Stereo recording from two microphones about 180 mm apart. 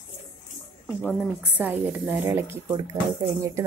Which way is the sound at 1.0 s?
10° right (ahead or behind).